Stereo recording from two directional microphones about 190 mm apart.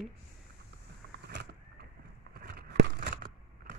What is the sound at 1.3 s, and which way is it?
Vehicle, 60° right (ahead or behind).